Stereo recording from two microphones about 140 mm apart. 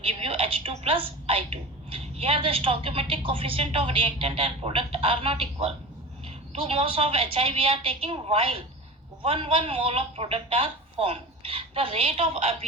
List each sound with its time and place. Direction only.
0.0 s a woman's voice: 45° right (ahead or behind)